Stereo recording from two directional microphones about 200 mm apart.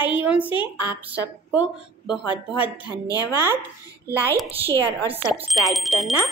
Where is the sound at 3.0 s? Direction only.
20° left (ahead or behind).